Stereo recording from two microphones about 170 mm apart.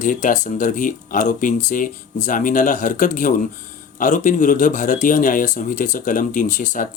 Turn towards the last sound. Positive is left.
turn(degrees=50)  # may be behind; listen again after turning